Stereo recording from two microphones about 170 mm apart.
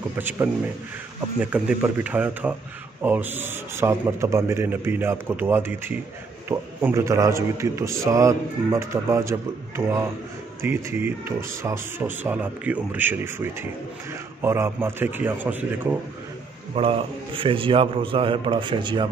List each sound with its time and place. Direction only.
0.2 s a man's voice: 10° right (ahead or behind)
16.7 s a man's voice: 35° right (ahead or behind)